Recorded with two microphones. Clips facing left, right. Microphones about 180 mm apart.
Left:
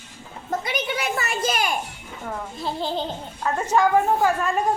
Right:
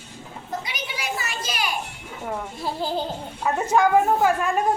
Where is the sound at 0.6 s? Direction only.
55° left (ahead or behind).